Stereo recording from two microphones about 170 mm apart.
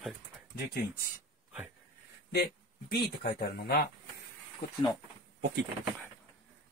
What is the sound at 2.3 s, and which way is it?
Speech, 70° left (ahead or behind).